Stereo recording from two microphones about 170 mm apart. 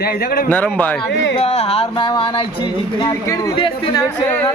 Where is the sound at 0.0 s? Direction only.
65° left (ahead or behind).